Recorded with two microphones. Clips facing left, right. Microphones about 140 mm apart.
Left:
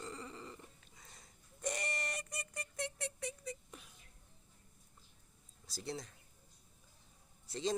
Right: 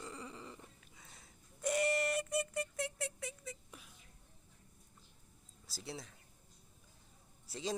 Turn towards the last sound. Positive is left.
turn(degrees=-10)  # may be behind; listen again after turning